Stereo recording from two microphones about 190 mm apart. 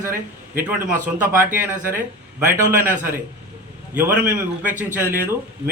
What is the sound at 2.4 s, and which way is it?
Speech, 45° right (ahead or behind).